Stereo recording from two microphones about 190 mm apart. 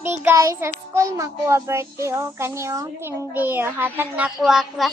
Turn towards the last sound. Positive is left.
turn(degrees=0)  # may be behind; listen again after turning